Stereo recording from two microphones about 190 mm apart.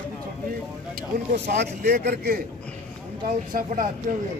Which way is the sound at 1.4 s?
55° right (ahead or behind).